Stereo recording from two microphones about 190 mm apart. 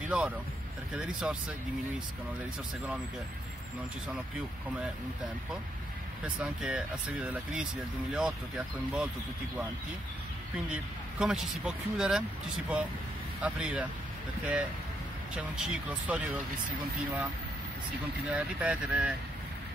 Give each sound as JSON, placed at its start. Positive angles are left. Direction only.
{"t": 0.9, "sound": "speech", "side_deg": -5}
{"t": 6.2, "sound": "speech", "side_deg": -5}
{"t": 10.7, "sound": "speech", "side_deg": -5}
{"t": 18.3, "sound": "speech", "side_deg": -5}